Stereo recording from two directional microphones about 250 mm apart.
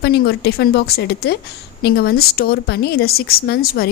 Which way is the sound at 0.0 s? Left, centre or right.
Left.